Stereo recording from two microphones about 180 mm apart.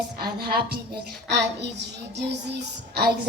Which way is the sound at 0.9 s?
70° right (ahead or behind).